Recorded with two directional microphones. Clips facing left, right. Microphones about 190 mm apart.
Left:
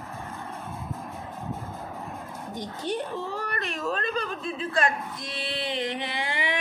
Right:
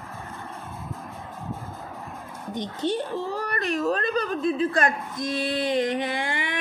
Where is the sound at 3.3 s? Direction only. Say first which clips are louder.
Right 5 dB; 40° right (ahead or behind).